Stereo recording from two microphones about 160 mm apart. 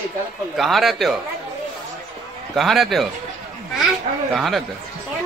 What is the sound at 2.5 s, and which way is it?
Speech, centre (ahead or behind).